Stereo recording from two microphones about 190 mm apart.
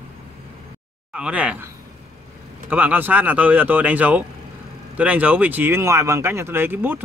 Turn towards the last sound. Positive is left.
turn(degrees=-10)  # may be behind; listen again after turning